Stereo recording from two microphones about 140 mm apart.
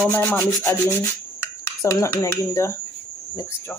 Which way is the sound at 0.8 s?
20° left (ahead or behind).